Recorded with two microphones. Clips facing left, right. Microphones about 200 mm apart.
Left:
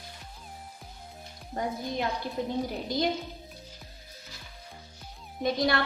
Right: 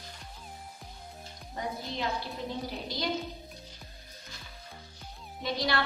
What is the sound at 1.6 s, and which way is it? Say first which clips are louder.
Speech: left 4 dB; 50° left (ahead or behind).